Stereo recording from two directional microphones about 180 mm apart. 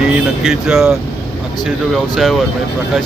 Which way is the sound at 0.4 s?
5° right (ahead or behind).